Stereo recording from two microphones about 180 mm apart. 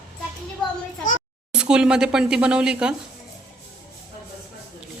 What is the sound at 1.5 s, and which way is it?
Speech, 5° right (ahead or behind).